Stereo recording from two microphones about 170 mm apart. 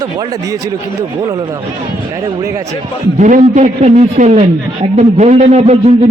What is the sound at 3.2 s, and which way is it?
A man's voice, 45° right (ahead or behind).